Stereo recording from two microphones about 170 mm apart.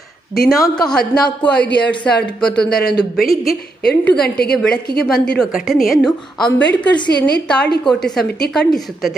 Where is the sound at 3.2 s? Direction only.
60° left (ahead or behind).